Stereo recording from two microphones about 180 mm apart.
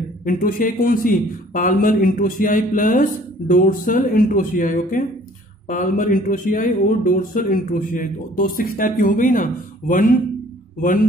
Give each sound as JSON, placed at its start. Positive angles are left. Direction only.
{"t": 0.2, "sound": "speech", "side_deg": 50}